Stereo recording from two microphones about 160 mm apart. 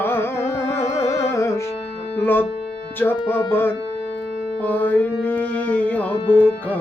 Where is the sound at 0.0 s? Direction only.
15° left (ahead or behind).